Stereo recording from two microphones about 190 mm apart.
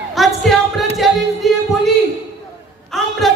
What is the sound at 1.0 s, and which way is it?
Music, centre (ahead or behind).